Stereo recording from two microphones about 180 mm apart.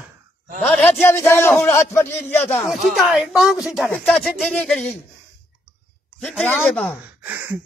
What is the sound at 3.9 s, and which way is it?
Speech, 5° left (ahead or behind).